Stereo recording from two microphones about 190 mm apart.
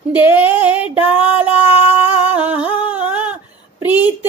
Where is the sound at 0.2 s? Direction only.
25° left (ahead or behind).